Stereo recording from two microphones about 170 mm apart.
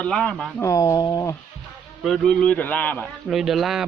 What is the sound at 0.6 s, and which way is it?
Speech, 20° left (ahead or behind).